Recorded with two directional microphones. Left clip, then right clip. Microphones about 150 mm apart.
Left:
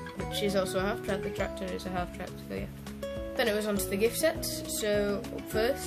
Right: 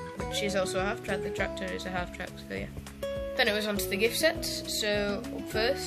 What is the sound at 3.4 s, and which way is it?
Speech, 10° left (ahead or behind).